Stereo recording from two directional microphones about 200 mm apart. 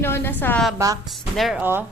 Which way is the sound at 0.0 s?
10° left (ahead or behind).